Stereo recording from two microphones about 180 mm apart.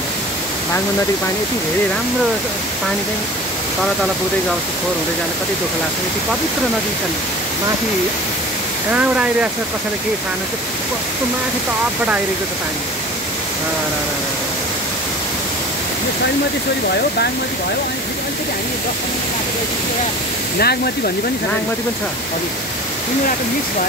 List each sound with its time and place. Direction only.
8.9 s speech: 5° right (ahead or behind)
20.5 s speech: 60° left (ahead or behind)